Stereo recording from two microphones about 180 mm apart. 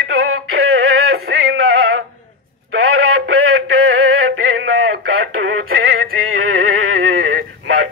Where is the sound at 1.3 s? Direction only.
85° right.